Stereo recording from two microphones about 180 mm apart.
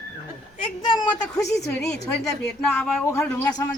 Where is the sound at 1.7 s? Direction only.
5° left (ahead or behind).